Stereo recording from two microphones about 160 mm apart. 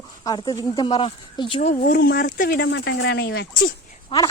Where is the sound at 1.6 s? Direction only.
55° left (ahead or behind); by 3.6 s 80° left.